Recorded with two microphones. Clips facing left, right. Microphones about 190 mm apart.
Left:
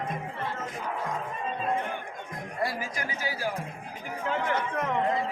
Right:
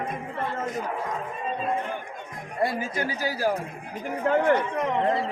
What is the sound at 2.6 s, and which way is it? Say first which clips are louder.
Speech: right 8 dB; 30° right (ahead or behind).